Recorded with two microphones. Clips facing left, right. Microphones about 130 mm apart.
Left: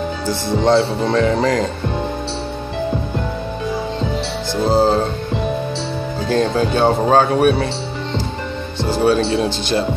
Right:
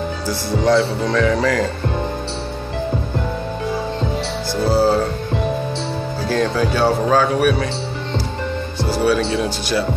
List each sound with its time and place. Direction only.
0.3 s speech: 25° left (ahead or behind)
4.6 s music: 20° left (ahead or behind)
6.2 s speech: 25° left (ahead or behind)
9.0 s speech: 25° left (ahead or behind)